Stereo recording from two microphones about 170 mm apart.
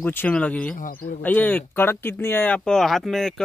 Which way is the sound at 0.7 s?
50° left (ahead or behind).